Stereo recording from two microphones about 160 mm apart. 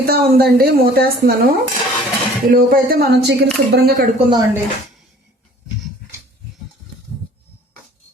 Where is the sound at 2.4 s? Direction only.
65° right (ahead or behind); by 4.1 s 80° right.